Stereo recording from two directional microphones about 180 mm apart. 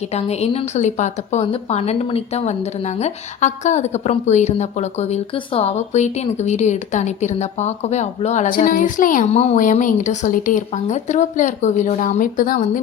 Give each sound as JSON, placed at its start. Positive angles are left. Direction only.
{"t": 0.1, "sound": "a woman's voice", "side_deg": 35}